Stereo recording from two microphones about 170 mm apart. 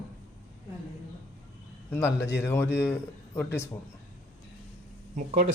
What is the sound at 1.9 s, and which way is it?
A man's voice, 15° left (ahead or behind).